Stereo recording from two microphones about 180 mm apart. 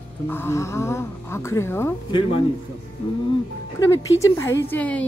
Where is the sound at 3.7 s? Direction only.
20° left (ahead or behind).